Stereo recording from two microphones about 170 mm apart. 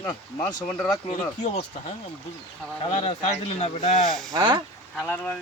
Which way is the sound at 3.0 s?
35° left (ahead or behind).